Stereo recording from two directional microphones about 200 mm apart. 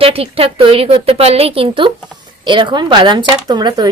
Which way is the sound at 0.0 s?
30° right (ahead or behind).